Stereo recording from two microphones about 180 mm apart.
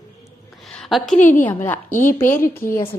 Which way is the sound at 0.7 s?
Centre (ahead or behind).